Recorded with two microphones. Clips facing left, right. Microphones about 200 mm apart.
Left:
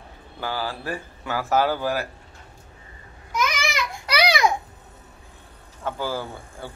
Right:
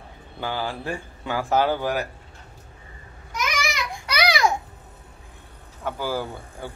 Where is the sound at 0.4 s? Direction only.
20° right (ahead or behind).